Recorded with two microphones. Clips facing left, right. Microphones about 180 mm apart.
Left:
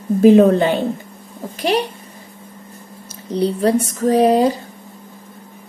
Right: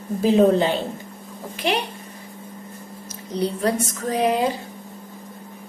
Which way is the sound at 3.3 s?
30° left (ahead or behind).